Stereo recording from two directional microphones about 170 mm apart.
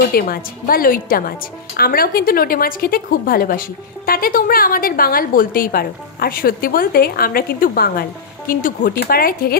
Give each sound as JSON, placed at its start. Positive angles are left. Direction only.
{"t": 0.1, "sound": "a woman's voice", "side_deg": 60}